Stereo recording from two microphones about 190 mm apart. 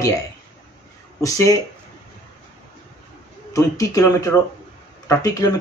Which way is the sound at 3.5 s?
15° left (ahead or behind).